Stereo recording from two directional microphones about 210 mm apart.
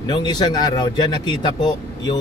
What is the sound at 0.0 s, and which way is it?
Speech, 20° left (ahead or behind).